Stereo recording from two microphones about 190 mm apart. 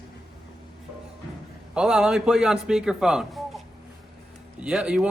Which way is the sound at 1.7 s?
5° right (ahead or behind).